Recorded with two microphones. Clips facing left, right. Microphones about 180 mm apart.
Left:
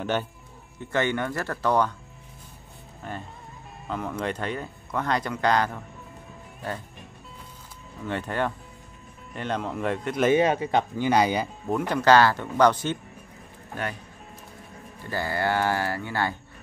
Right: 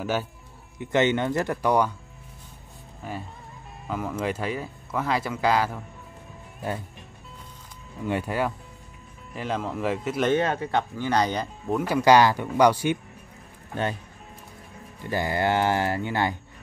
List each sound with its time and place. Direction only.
0.0 s speech: 5° right (ahead or behind)
0.7 s speech: 20° right (ahead or behind)
3.0 s speech: 5° right (ahead or behind)
8.0 s speech: 10° right (ahead or behind)
10.3 s speech: 15° left (ahead or behind); by 13.0 s 10° right (ahead or behind)
15.0 s speech: 20° right (ahead or behind)